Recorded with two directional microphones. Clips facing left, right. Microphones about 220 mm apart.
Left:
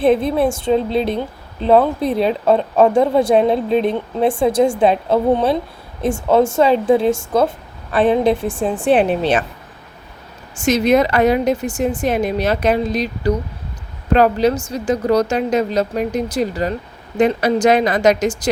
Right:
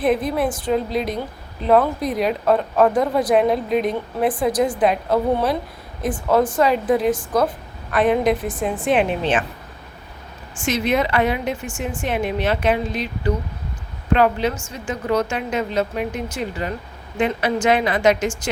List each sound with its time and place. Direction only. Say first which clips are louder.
0.0 s speech: left 5 dB; 25° left (ahead or behind)
10.5 s speech: left 6 dB; 40° left (ahead or behind)